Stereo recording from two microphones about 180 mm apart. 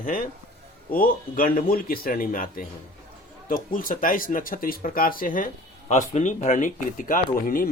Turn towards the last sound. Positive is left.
turn(degrees=50)  # may be behind; listen again after turning